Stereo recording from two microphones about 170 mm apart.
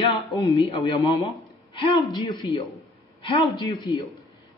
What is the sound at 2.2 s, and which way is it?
A man's voice, 30° left (ahead or behind).